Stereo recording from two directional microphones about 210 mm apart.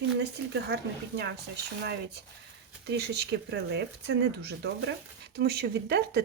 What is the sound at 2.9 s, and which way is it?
Speech, 50° right (ahead or behind).